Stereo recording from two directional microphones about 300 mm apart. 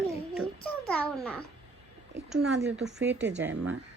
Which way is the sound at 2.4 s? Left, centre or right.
Right.